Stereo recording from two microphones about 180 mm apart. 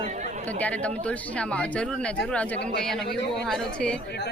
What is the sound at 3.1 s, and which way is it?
Speech, 70° left (ahead or behind).